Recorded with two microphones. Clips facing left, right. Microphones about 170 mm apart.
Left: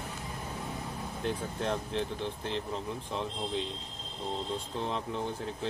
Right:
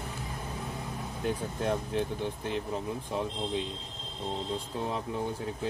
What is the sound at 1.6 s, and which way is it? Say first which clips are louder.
Speech: right 3 dB; 10° right (ahead or behind).